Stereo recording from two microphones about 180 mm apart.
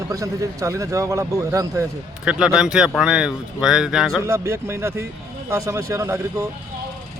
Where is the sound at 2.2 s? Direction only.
5° right (ahead or behind).